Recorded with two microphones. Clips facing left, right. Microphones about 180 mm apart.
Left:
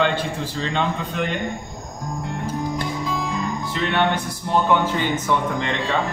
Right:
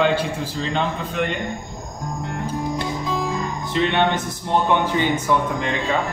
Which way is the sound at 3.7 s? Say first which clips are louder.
Right 3 dB; 20° right (ahead or behind).